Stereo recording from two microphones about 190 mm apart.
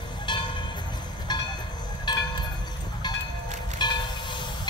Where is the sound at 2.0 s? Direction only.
20° left (ahead or behind).